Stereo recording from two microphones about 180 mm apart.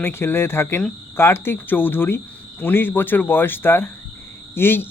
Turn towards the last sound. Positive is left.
turn(degrees=10)  # may be behind; listen again after turning